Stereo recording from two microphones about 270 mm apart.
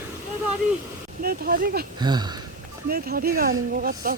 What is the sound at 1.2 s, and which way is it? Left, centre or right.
Speech, right.